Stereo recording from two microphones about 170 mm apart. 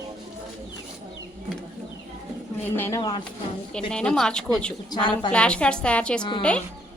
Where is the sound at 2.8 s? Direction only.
20° left (ahead or behind).